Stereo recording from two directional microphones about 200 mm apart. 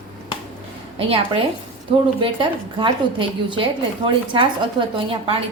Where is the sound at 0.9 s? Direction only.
25° right (ahead or behind).